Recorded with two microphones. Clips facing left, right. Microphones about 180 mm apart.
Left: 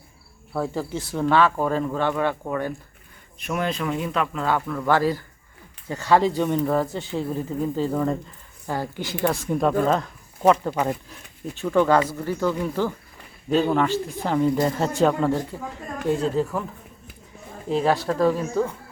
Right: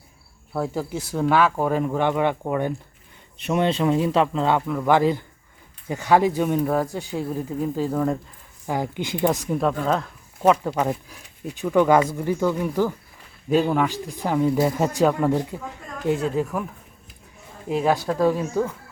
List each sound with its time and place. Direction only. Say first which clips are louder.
0.5 s speech: even; 5° right (ahead or behind)
8.6 s speech: right 2 dB; 15° right (ahead or behind)
9.5 s speech: left 2 dB; centre (ahead or behind)
17.7 s speech: even; 10° right (ahead or behind)